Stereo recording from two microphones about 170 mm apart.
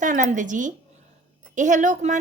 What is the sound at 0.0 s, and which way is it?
A woman's voice, 50° right (ahead or behind).